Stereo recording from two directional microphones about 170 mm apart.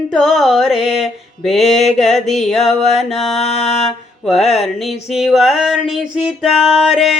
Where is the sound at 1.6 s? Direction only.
40° left (ahead or behind).